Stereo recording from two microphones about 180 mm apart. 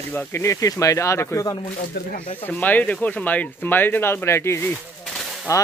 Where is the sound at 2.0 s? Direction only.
65° left (ahead or behind).